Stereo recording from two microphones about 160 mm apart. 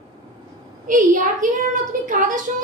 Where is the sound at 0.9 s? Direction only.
50° right (ahead or behind).